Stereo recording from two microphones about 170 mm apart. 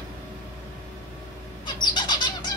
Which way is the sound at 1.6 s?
25° left (ahead or behind).